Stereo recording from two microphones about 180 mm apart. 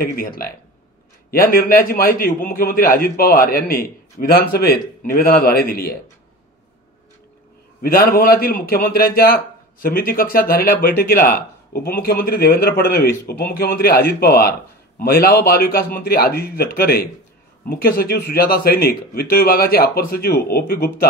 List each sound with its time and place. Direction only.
0.0 s a man's voice: 55° left (ahead or behind)
7.8 s a man's voice: 55° left (ahead or behind)